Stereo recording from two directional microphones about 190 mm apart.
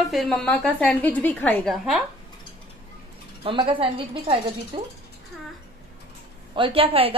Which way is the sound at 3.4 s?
30° right (ahead or behind).